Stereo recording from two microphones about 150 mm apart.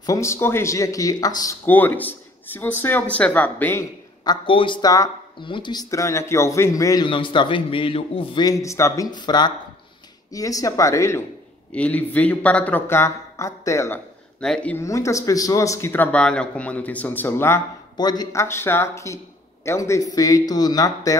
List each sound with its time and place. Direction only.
0.0 s speech: 20° left (ahead or behind)
1.7 s speech: 10° left (ahead or behind)
4.2 s speech: 30° left (ahead or behind)
7.1 s a man's voice: 35° left (ahead or behind)
8.5 s speech: 20° left (ahead or behind)
14.4 s speech: 5° left (ahead or behind)
14.9 s speech: 20° left (ahead or behind)
17.9 s speech: 25° left (ahead or behind)